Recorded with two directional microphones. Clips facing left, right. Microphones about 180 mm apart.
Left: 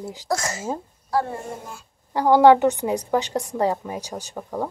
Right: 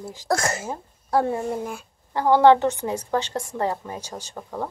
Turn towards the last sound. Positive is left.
turn(degrees=10)  # may be behind; listen again after turning